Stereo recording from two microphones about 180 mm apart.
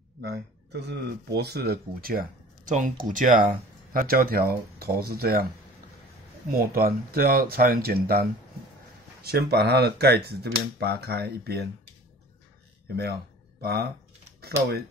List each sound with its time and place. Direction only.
0.2 s speech: 65° right (ahead or behind)
6.5 s speech: 55° right (ahead or behind)
12.8 s speech: 65° right (ahead or behind)